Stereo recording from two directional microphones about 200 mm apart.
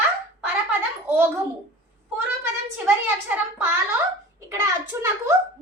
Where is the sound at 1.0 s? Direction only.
10° right (ahead or behind).